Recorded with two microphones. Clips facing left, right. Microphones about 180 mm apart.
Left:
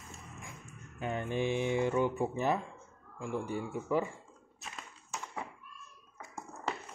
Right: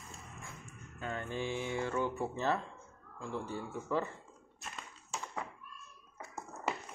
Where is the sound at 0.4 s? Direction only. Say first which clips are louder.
Left 1 dB; 15° left (ahead or behind).